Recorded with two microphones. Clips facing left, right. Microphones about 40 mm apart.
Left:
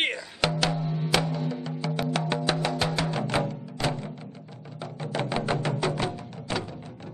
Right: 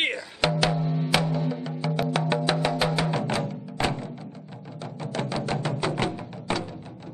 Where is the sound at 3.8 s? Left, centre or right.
Right.